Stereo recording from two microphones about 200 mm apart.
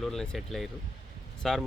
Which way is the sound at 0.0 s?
Centre (ahead or behind).